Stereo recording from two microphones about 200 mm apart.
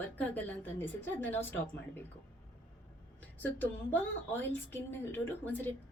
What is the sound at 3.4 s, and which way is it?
A woman's voice, 10° left (ahead or behind).